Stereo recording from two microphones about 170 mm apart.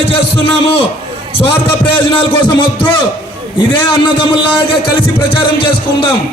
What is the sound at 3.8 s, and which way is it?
Speech, 30° left (ahead or behind).